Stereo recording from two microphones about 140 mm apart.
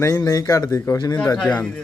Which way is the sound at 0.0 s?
20° left (ahead or behind).